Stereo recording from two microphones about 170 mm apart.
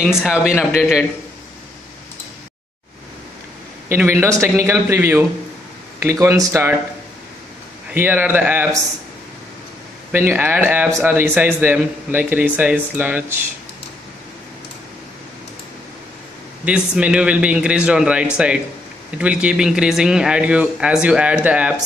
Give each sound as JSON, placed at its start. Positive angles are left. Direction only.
{"t": 0.0, "sound": "speech", "side_deg": -5}
{"t": 3.9, "sound": "a man's voice", "side_deg": -15}
{"t": 7.9, "sound": "a man's voice", "side_deg": -10}
{"t": 10.1, "sound": "a man's voice", "side_deg": -10}
{"t": 16.6, "sound": "speech", "side_deg": -5}